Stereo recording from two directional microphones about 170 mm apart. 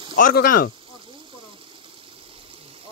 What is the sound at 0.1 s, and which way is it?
Speech, 55° left (ahead or behind).